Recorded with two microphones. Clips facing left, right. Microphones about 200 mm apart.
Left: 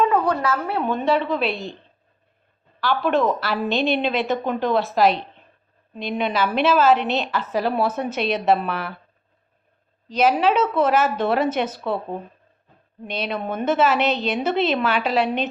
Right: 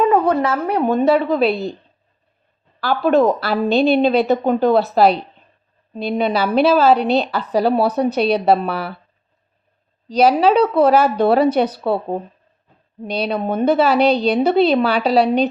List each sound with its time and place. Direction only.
0.3 s a woman's voice: 25° right (ahead or behind)
0.7 s a woman's voice: 40° right (ahead or behind)
2.8 s a woman's voice: 40° right (ahead or behind)
10.1 s a woman's voice: 35° right (ahead or behind)
11.9 s speech: 45° right (ahead or behind)
13.1 s a woman's voice: 35° right (ahead or behind)